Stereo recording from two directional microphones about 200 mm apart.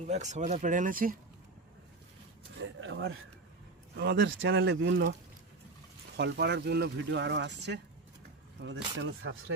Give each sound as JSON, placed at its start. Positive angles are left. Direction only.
{"t": 0.0, "sound": "speech", "side_deg": -35}
{"t": 2.8, "sound": "speech", "side_deg": -70}
{"t": 6.1, "sound": "speech", "side_deg": -60}